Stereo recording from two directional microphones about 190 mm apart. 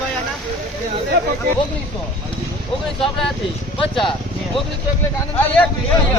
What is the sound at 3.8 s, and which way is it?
Speech, 25° left (ahead or behind).